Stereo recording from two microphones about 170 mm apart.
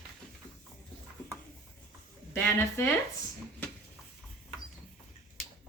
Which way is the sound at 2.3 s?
15° left (ahead or behind).